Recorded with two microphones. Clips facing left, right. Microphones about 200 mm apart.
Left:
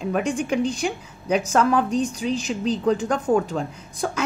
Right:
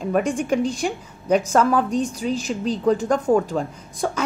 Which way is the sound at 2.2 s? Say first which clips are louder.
Right 1 dB; 45° right (ahead or behind).